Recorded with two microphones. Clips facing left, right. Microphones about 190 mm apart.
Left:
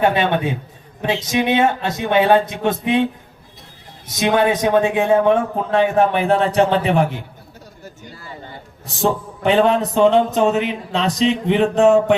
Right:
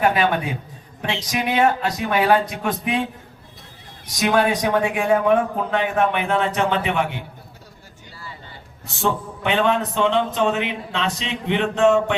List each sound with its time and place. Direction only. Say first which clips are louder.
0.0 s speech: left 2 dB; 25° left (ahead or behind)
4.2 s a man's voice: left 3 dB; 20° left (ahead or behind)
9.0 s a man's voice: left 4 dB; 35° left (ahead or behind)